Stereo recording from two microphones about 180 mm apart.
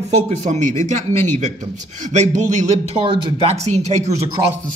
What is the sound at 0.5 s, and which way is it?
A man's voice, 40° right (ahead or behind).